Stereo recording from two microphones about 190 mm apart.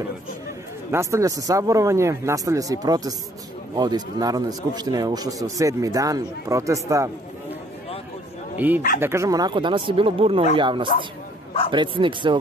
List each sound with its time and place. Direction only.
0.9 s a man's voice: 15° right (ahead or behind)
8.5 s a man's voice: 10° right (ahead or behind); by 12.4 s 25° right (ahead or behind)